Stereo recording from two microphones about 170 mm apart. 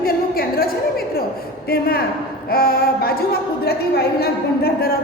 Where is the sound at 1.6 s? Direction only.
65° left (ahead or behind).